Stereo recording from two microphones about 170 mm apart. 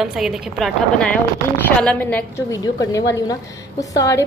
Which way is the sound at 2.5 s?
20° left (ahead or behind).